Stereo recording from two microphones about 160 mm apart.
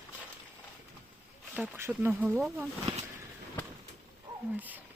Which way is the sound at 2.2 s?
Centre (ahead or behind).